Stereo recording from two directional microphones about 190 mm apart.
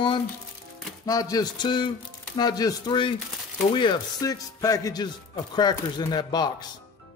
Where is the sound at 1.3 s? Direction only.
20° left (ahead or behind).